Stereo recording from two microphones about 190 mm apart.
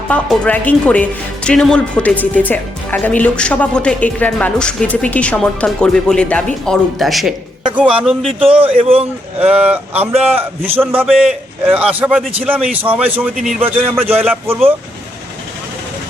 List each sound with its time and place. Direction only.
0.1 s speech: 5° left (ahead or behind)
8.5 s a man's voice: 30° right (ahead or behind)
9.4 s speech: 5° right (ahead or behind)